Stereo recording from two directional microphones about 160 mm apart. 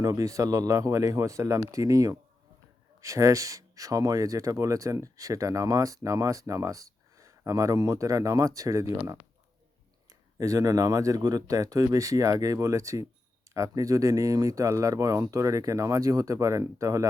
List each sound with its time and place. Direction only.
0.0 s speech: 20° right (ahead or behind)